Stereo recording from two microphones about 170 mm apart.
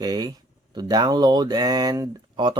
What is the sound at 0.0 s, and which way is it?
Speech, 25° right (ahead or behind).